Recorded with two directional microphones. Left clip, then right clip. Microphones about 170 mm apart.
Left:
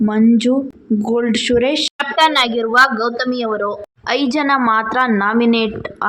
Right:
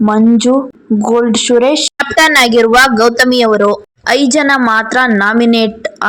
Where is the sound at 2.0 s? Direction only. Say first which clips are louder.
Right 6 dB; 35° right (ahead or behind).